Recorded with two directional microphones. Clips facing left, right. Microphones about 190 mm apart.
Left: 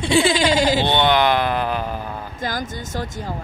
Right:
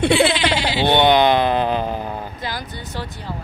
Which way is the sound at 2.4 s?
45° left (ahead or behind).